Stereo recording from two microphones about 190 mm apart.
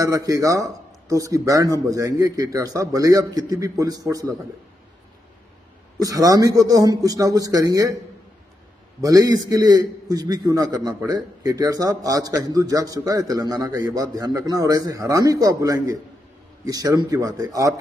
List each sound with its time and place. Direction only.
0.0 s a man's voice: 15° right (ahead or behind)
6.0 s a man's voice: 20° right (ahead or behind)
9.0 s a man's voice: 20° right (ahead or behind)